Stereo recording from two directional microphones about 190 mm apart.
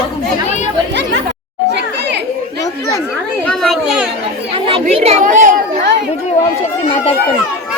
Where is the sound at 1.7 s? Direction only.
65° right (ahead or behind).